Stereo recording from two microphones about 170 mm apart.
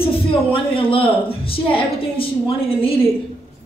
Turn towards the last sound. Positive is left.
turn(degrees=35)  # may be behind; listen again after turning